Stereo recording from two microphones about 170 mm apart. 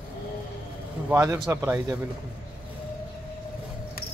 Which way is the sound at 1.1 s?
15° right (ahead or behind).